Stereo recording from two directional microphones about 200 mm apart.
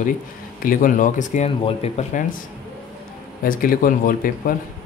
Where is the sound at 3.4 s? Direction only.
45° left (ahead or behind).